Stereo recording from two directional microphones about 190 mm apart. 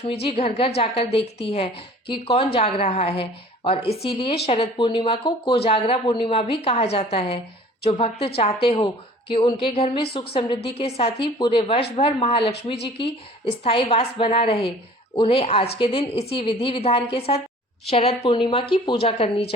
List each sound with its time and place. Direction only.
0.1 s a woman's voice: 30° left (ahead or behind)
13.7 s a woman's voice: 30° left (ahead or behind)